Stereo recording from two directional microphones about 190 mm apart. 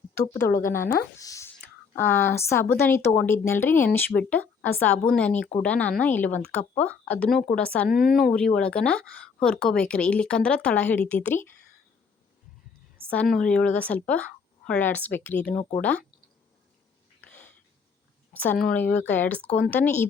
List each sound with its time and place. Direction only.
0.3 s a woman's voice: 15° left (ahead or behind)
13.1 s speech: 5° left (ahead or behind)
17.2 s a sound: 10° left (ahead or behind)
18.7 s speech: 10° left (ahead or behind)